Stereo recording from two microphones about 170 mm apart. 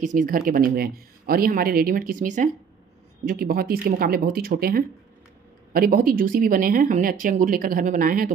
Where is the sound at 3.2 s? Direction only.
60° right (ahead or behind).